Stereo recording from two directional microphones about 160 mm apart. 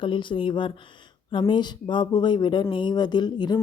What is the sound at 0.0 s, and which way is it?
Speech, 30° left (ahead or behind).